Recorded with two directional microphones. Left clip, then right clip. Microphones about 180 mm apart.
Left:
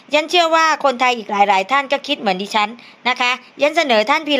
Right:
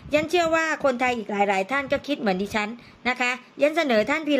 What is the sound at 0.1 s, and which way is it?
A woman's voice, 20° right (ahead or behind).